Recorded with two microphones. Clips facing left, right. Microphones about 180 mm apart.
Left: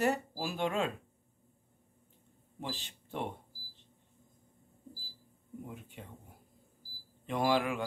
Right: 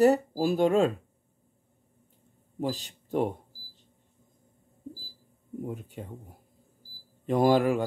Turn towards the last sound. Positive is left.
turn(degrees=-40)  # may be behind; listen again after turning